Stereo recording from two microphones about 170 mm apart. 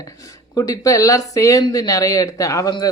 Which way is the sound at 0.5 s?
20° left (ahead or behind).